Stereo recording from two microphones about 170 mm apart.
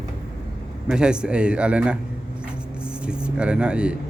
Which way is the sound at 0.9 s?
5° right (ahead or behind).